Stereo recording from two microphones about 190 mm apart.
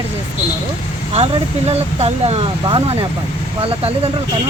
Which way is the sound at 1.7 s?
35° right (ahead or behind).